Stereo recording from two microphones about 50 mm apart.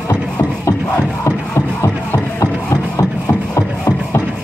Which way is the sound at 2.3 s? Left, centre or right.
Left.